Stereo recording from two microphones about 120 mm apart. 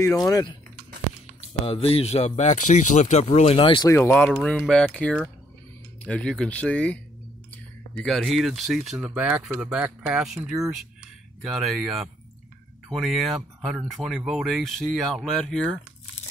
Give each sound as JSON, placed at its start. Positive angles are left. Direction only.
{"t": 0.0, "sound": "speech", "side_deg": 25}
{"t": 1.5, "sound": "speech", "side_deg": 55}
{"t": 3.5, "sound": "speech", "side_deg": 45}
{"t": 3.8, "sound": "speech", "side_deg": 20}